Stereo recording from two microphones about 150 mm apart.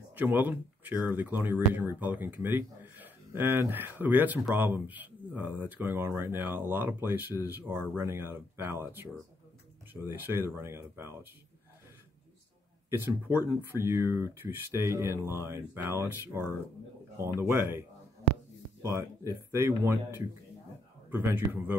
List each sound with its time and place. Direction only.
0.1 s speech: 10° right (ahead or behind)
12.9 s speech: 15° right (ahead or behind)